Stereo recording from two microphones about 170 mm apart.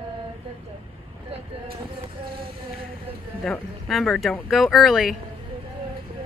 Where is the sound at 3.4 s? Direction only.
Centre (ahead or behind).